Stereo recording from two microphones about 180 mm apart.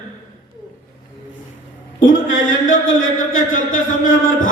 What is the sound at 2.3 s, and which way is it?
Mantra, 45° left (ahead or behind).